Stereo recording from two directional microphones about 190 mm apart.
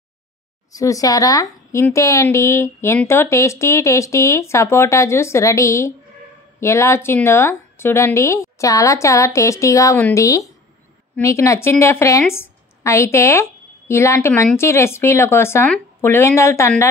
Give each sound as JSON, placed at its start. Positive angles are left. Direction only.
{"t": 0.7, "sound": "a woman's voice", "side_deg": 15}